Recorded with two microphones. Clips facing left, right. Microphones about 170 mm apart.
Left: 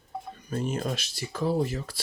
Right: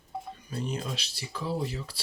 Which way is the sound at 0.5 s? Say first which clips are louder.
Left 5 dB; 50° left (ahead or behind).